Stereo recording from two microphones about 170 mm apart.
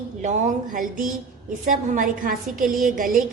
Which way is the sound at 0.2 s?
45° right (ahead or behind).